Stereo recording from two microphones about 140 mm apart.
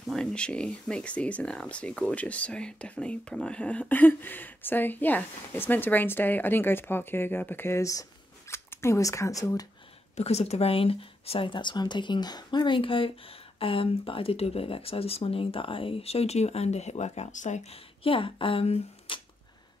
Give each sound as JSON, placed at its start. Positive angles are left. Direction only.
{"t": 0.0, "sound": "a woman's voice", "side_deg": 5}
{"t": 10.1, "sound": "speech", "side_deg": 50}